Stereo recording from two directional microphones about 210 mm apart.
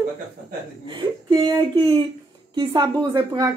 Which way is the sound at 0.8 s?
20° right (ahead or behind).